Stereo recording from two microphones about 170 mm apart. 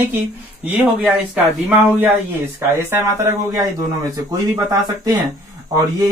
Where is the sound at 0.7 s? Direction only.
10° right (ahead or behind).